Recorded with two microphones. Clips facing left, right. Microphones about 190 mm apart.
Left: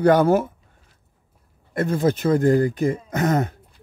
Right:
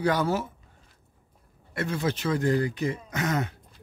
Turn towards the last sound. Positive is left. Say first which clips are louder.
# left 7 dB
turn(degrees=50)  # may be behind; listen again after turning